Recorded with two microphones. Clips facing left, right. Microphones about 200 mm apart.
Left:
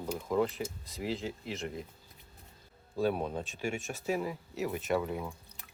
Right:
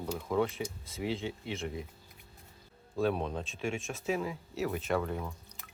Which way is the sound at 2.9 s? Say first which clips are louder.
Even; 5° left (ahead or behind).